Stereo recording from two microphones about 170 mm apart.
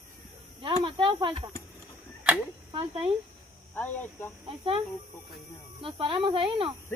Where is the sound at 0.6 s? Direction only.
30° right (ahead or behind).